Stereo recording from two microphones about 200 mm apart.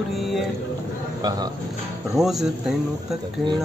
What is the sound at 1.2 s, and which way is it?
Speech, 20° right (ahead or behind).